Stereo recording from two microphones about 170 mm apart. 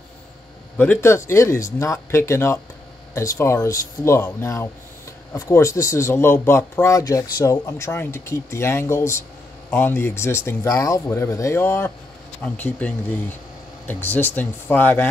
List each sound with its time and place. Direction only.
0.7 s speech: 15° left (ahead or behind)